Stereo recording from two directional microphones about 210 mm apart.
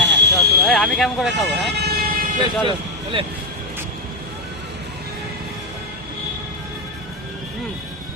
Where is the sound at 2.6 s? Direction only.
25° right (ahead or behind).